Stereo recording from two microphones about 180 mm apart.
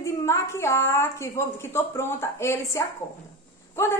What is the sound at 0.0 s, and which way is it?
A woman's voice, 15° left (ahead or behind).